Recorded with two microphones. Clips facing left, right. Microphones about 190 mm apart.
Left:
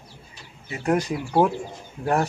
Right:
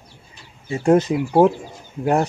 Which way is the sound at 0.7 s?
25° right (ahead or behind).